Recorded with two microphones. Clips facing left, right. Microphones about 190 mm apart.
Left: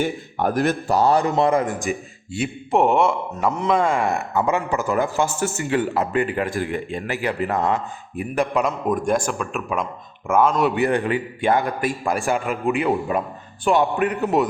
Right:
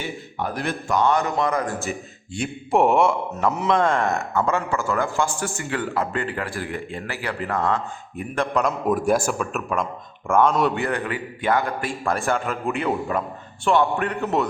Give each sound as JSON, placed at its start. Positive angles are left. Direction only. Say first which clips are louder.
{"t": 0.0, "sound": "a man's voice", "louder": "left 7 dB", "side_deg": 50}
{"t": 8.9, "sound": "a man's voice", "louder": "right 3 dB", "side_deg": -5}
{"t": 10.8, "sound": "a man's voice", "louder": "left 5 dB", "side_deg": 25}